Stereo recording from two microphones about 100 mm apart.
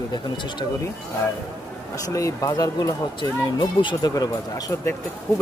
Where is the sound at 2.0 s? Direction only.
35° left (ahead or behind); by 4.1 s 50° left (ahead or behind).